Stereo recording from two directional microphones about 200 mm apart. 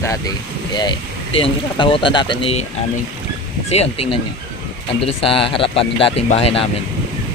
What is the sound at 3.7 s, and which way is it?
Speech, 30° left (ahead or behind).